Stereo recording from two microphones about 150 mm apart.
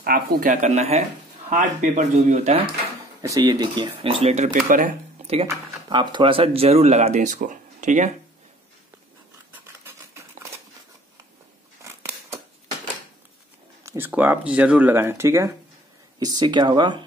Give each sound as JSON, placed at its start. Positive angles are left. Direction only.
{"t": 0.0, "sound": "speech", "side_deg": -75}
{"t": 3.2, "sound": "speech", "side_deg": -25}
{"t": 4.6, "sound": "speech", "side_deg": -65}
{"t": 5.2, "sound": "speech", "side_deg": -40}
{"t": 9.8, "sound": "cutlery", "side_deg": -20}
{"t": 11.8, "sound": "a sound", "side_deg": -20}
{"t": 13.8, "sound": "speech", "side_deg": -15}